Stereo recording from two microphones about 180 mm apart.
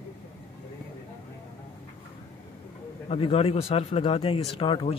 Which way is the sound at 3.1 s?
35° left (ahead or behind).